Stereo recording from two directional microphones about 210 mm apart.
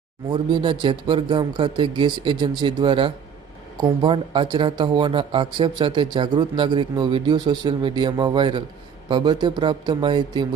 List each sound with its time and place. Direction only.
0.3 s speech: 20° right (ahead or behind)